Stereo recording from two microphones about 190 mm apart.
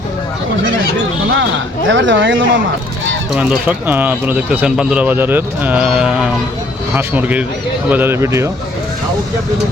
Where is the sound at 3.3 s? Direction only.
5° right (ahead or behind).